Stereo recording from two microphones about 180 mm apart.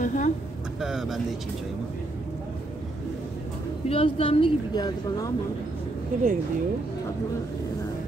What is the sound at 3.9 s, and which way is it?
Speech, 30° left (ahead or behind).